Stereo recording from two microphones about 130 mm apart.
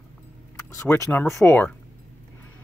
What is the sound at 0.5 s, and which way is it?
Speech, 25° left (ahead or behind).